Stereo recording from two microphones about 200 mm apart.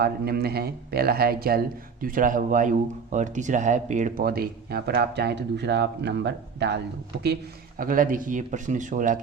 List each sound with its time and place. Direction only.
0.0 s a man's voice: 50° right (ahead or behind)
7.8 s speech: 45° right (ahead or behind)